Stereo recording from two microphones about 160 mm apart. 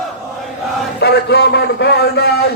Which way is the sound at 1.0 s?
90° left.